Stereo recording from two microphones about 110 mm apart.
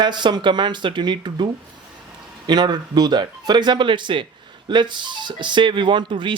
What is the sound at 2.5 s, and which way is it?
Speech, 40° right (ahead or behind).